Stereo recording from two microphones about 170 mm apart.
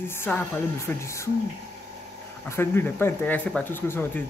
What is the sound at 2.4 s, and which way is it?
Speech, 15° left (ahead or behind).